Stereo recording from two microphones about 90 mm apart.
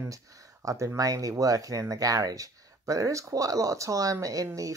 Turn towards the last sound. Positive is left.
turn(degrees=-40)  # may be behind; listen again after turning